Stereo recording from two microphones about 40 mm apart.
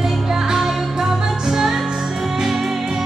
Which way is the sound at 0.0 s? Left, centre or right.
Centre.